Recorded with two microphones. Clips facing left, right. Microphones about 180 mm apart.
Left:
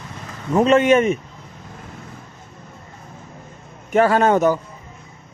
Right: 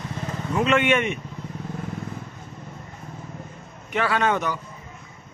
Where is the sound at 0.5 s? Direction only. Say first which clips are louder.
Left 7 dB; 40° left (ahead or behind).